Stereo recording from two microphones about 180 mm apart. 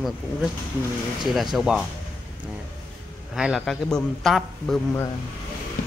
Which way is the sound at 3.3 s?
Centre (ahead or behind).